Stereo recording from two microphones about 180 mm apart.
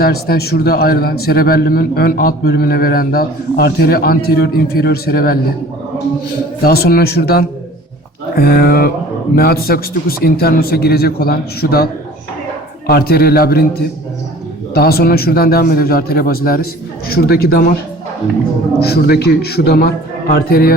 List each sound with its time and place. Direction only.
0.0 s a man's voice: 60° left (ahead or behind)
6.6 s a man's voice: 60° left (ahead or behind)
12.9 s a man's voice: 60° left (ahead or behind)
14.7 s a man's voice: 60° left (ahead or behind)
18.8 s a man's voice: 60° left (ahead or behind)